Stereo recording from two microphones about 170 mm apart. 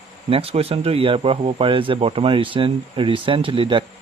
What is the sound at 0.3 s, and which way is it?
Speech, 35° right (ahead or behind).